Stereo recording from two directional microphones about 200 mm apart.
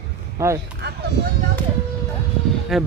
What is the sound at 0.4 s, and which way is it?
Speech, 15° right (ahead or behind).